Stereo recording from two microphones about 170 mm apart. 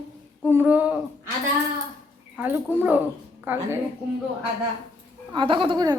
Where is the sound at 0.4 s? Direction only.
10° right (ahead or behind).